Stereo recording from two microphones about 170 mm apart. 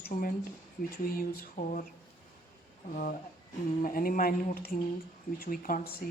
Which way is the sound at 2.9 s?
55° left (ahead or behind).